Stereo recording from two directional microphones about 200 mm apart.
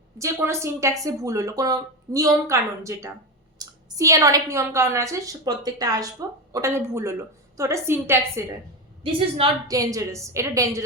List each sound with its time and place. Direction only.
0.2 s a woman's voice: 15° right (ahead or behind)